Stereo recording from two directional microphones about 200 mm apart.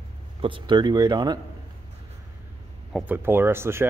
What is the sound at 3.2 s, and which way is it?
Speech, 10° right (ahead or behind).